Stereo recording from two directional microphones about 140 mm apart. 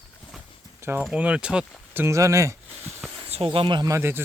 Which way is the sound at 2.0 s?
20° right (ahead or behind).